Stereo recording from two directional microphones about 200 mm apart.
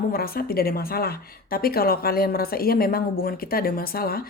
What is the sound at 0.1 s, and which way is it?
A woman's voice, 50° left (ahead or behind).